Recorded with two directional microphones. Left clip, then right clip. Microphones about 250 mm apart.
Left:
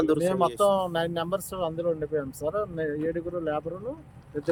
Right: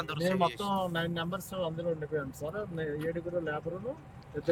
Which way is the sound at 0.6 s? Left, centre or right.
Centre.